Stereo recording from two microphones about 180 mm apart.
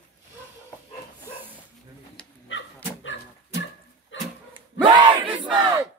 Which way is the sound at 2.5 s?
90° left.